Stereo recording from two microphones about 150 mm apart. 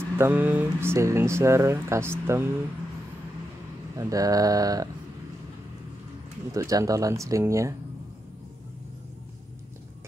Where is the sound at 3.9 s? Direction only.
25° right (ahead or behind).